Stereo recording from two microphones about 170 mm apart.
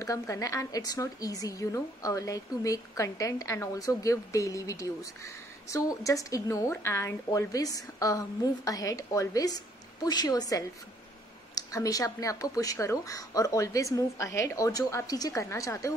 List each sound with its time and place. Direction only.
0.0 s a woman's voice: 20° left (ahead or behind)